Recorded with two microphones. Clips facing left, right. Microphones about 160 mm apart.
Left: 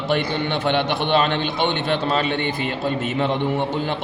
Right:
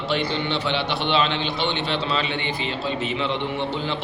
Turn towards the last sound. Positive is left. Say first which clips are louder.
# left 4 dB
turn(degrees=50)  # may be behind; listen again after turning